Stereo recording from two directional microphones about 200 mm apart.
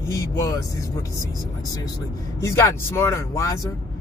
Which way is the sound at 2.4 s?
15° left (ahead or behind).